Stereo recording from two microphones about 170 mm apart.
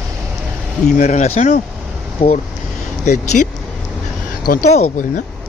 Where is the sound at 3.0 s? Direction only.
45° left (ahead or behind).